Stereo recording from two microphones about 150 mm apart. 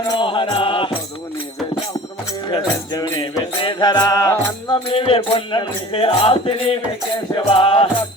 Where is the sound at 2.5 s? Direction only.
25° left (ahead or behind).